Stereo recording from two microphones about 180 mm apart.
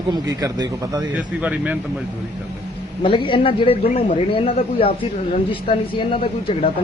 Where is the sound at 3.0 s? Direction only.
25° left (ahead or behind).